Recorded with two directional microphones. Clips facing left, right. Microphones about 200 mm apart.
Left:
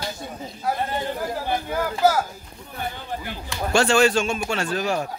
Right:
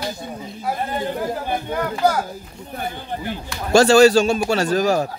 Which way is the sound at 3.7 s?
35° right (ahead or behind).